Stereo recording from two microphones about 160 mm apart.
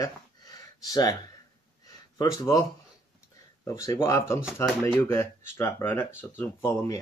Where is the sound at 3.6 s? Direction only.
20° left (ahead or behind).